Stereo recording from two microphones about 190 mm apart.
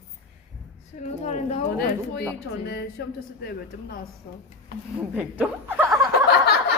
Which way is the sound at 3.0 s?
60° left (ahead or behind).